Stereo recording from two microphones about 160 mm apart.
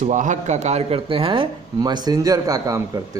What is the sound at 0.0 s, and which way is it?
Speech, 50° right (ahead or behind).